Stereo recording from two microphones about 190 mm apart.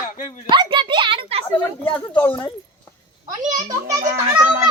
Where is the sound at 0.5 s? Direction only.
25° right (ahead or behind).